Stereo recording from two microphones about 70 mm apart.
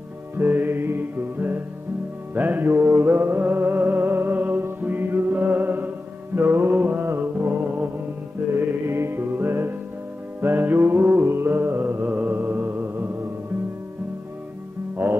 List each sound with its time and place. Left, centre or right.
0.4 s music: right
15.0 s music: right